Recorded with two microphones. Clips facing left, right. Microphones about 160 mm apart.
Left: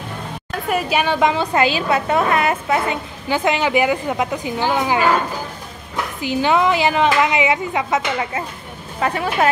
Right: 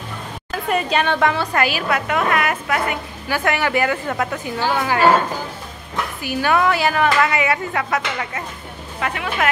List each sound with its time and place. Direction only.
0.5 s a woman's voice: 5° left (ahead or behind)
6.2 s a woman's voice: 20° left (ahead or behind)
9.0 s speech: 35° left (ahead or behind)